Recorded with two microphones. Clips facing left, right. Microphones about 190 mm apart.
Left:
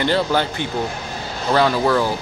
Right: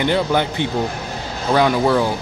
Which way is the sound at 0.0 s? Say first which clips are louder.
Right 1 dB; 15° right (ahead or behind).